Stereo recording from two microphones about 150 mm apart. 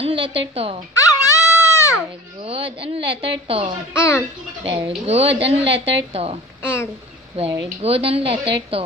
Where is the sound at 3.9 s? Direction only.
20° left (ahead or behind).